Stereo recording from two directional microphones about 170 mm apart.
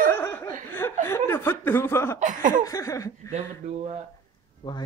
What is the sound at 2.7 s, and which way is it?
Speech, 20° left (ahead or behind).